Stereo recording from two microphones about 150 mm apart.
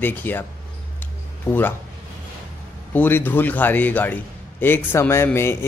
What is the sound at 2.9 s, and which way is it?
A man's voice, 15° left (ahead or behind).